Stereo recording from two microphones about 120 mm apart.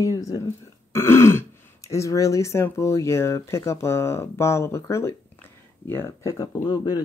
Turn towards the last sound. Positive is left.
turn(degrees=35)  # may be behind; listen again after turning